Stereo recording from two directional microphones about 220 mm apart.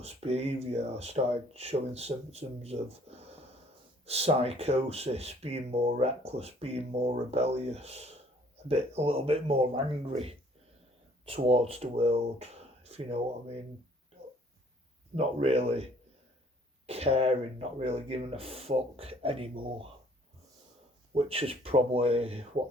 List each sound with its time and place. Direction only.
0.0 s speech: 30° right (ahead or behind)
15.1 s speech: 30° right (ahead or behind)
16.8 s speech: 30° right (ahead or behind)
21.1 s speech: 25° right (ahead or behind)